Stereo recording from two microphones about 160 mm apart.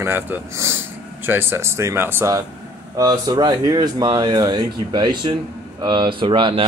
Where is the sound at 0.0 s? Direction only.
15° right (ahead or behind).